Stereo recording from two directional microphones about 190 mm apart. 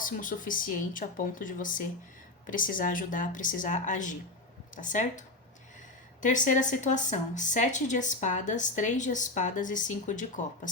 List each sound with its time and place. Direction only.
0.0 s speech: 45° left (ahead or behind)
6.2 s a woman's voice: 40° left (ahead or behind)